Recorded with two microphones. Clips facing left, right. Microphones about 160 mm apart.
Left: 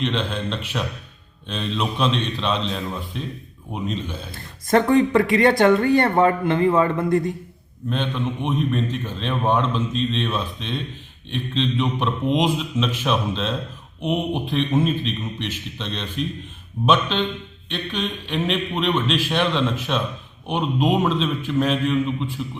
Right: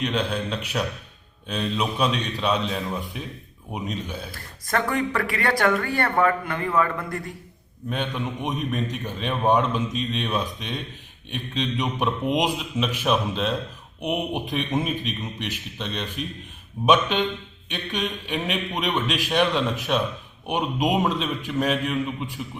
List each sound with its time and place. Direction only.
0.0 s a man's voice: 10° right (ahead or behind)
4.3 s speech: 25° left (ahead or behind)
7.9 s a man's voice: 10° right (ahead or behind)